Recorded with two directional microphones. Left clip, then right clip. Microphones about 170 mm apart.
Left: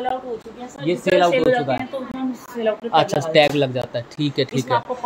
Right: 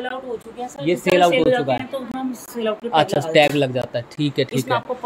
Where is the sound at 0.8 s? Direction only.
15° right (ahead or behind).